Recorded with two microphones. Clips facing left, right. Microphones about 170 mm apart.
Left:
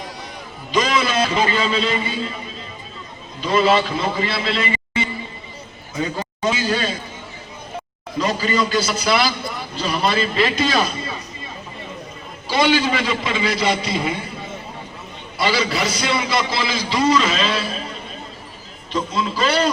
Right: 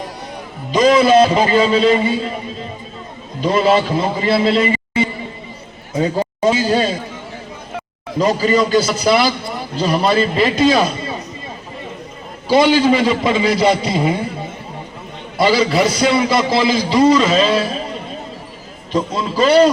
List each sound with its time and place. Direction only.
0.7 s a man's voice: 35° right (ahead or behind)
3.4 s a man's voice: 45° right (ahead or behind)
8.2 s a man's voice: 40° right (ahead or behind)
12.5 s a man's voice: 40° right (ahead or behind)
15.4 s a man's voice: 45° right (ahead or behind)
18.9 s a man's voice: 40° right (ahead or behind)